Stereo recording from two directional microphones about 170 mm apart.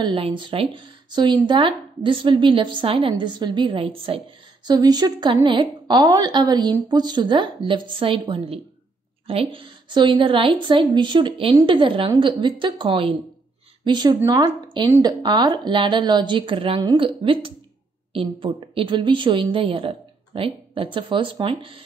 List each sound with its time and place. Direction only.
0.0 s a woman's voice: 30° right (ahead or behind)